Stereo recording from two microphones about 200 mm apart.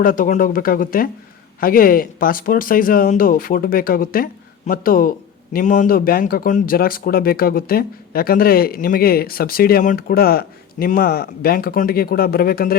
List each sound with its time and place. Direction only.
0.0 s speech: 45° left (ahead or behind)